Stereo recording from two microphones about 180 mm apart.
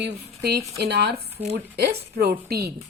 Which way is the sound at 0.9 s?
70° right (ahead or behind).